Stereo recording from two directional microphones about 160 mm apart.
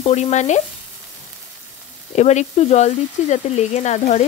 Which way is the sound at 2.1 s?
45° left (ahead or behind).